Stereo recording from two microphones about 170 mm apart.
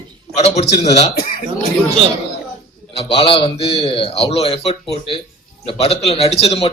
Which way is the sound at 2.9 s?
35° left (ahead or behind).